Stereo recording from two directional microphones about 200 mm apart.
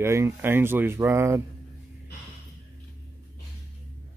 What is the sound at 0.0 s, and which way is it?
Speech, 15° right (ahead or behind).